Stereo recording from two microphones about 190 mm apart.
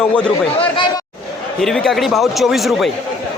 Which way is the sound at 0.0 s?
5° left (ahead or behind).